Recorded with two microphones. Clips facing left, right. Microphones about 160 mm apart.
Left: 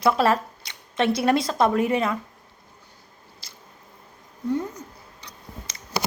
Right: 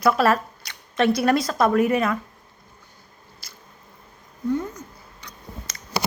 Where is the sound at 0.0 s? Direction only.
25° left (ahead or behind).